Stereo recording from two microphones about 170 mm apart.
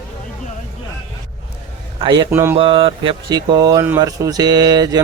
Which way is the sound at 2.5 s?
30° right (ahead or behind).